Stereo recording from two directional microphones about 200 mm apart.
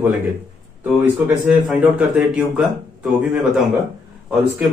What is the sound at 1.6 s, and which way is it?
A man's voice, 5° right (ahead or behind).